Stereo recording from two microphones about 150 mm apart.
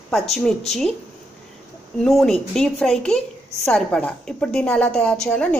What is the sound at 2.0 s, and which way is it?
A woman's voice, centre (ahead or behind).